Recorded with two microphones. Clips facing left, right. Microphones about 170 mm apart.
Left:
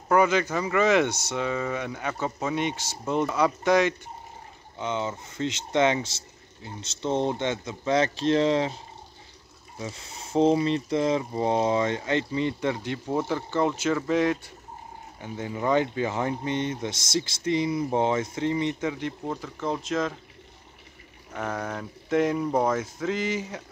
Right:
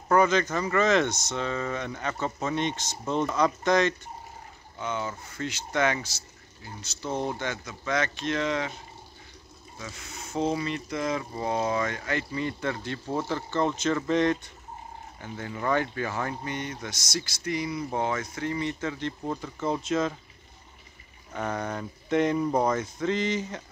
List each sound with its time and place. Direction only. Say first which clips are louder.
0.1 s speech: left 1 dB; 10° left (ahead or behind)
19.2 s speech: right 1 dB; centre (ahead or behind)
21.3 s speech: even; 5° left (ahead or behind)